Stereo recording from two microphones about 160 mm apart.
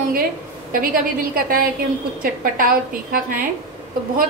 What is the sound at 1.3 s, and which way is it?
A woman's voice, 65° right (ahead or behind).